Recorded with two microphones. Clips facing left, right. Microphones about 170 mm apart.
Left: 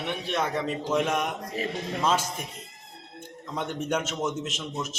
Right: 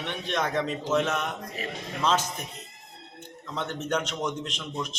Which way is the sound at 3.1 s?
10° left (ahead or behind).